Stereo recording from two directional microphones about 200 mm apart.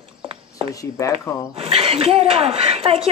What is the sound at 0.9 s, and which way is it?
Speech, 15° left (ahead or behind).